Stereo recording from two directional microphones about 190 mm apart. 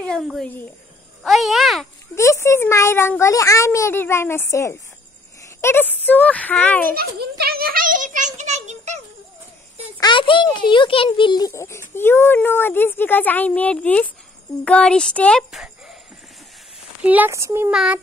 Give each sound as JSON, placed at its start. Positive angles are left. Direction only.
{"t": 0.0, "sound": "a child's voice", "side_deg": 5}
{"t": 2.1, "sound": "a child's voice", "side_deg": 15}
{"t": 7.0, "sound": "a child's voice", "side_deg": -55}
{"t": 8.4, "sound": "a sound", "side_deg": -40}
{"t": 9.9, "sound": "a child's voice", "side_deg": 25}
{"t": 17.0, "sound": "speech", "side_deg": -10}